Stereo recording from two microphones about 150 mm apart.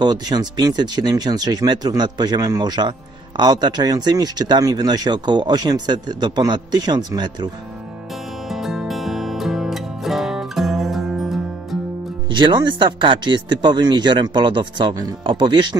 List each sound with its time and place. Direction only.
0.0 s speech: 25° right (ahead or behind)
8.5 s music: centre (ahead or behind)
12.3 s a man's voice: 30° right (ahead or behind)